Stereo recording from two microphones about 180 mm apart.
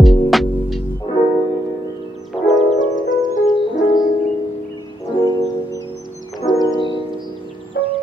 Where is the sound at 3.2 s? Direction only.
25° left (ahead or behind).